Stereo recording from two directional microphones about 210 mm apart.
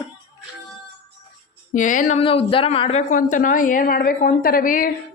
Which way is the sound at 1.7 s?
40° left (ahead or behind).